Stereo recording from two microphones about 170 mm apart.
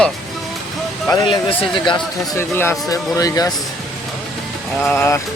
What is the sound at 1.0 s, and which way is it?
Speech, 25° left (ahead or behind).